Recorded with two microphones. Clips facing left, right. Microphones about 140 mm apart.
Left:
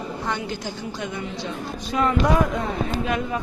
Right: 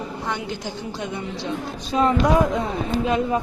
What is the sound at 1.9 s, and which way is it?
A woman's voice, 25° right (ahead or behind).